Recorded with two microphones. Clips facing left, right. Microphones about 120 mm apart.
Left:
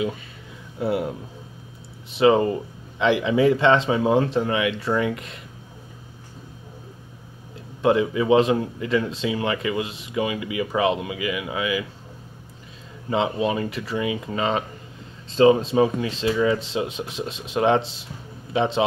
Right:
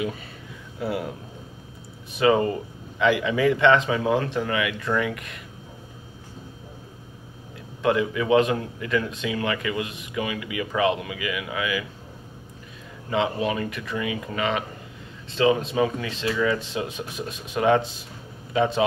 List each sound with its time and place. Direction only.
0.7 s a man's voice: 25° left (ahead or behind)
2.1 s a man's voice: 25° left (ahead or behind)
7.8 s a man's voice: 30° left (ahead or behind)
13.1 s a man's voice: 25° left (ahead or behind)